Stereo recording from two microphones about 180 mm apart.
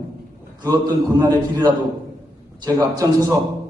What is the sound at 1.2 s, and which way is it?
A man's voice, 20° right (ahead or behind).